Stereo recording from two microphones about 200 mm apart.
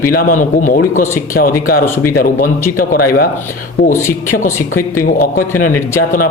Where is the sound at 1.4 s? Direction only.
55° left (ahead or behind).